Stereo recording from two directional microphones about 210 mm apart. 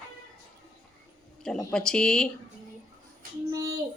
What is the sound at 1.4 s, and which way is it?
Speech, 5° left (ahead or behind).